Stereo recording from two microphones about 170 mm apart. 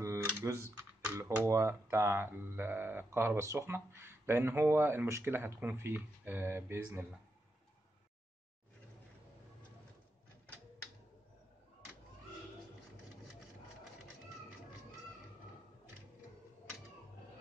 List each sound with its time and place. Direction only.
0.0 s camera: 15° right (ahead or behind)
0.3 s a sound: 15° right (ahead or behind)
1.5 s speech: 15° right (ahead or behind)